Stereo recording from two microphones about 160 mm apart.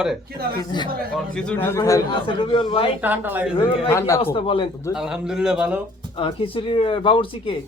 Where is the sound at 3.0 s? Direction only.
10° right (ahead or behind).